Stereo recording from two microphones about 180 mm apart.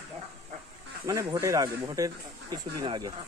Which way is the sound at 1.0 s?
15° right (ahead or behind).